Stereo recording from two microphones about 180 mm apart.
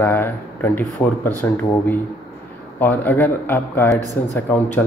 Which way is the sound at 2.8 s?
10° left (ahead or behind).